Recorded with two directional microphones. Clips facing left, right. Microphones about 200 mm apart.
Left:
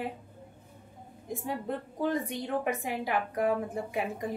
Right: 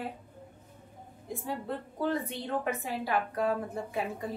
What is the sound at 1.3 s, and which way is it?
A woman's voice, 15° left (ahead or behind).